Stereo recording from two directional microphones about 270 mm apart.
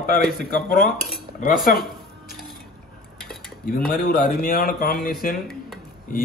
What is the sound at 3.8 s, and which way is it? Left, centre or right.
A man's voice, left.